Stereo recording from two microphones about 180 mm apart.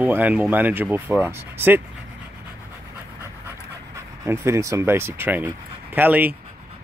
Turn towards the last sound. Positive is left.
turn(degrees=-10)  # may be behind; listen again after turning